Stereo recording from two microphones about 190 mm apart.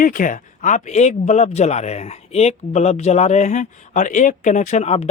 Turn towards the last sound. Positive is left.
turn(degrees=35)  # may be behind; listen again after turning